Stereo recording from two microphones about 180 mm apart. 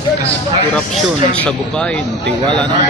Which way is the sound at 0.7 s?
5° left (ahead or behind).